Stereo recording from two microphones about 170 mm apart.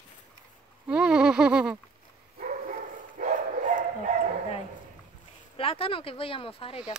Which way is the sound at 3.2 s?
50° right (ahead or behind).